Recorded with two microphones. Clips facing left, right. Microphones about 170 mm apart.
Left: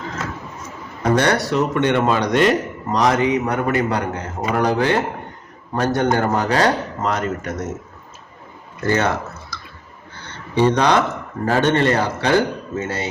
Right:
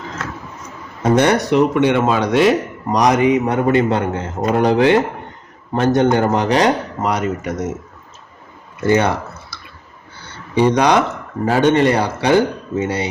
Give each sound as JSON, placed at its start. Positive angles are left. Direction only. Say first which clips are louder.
{"t": 1.0, "sound": "speech", "louder": "right 3 dB", "side_deg": -20}
{"t": 8.9, "sound": "drip", "louder": "right 4 dB", "side_deg": -15}
{"t": 10.2, "sound": "a sound", "louder": "right 2 dB", "side_deg": -10}
{"t": 11.4, "sound": "a man's voice", "louder": "right 3 dB", "side_deg": -10}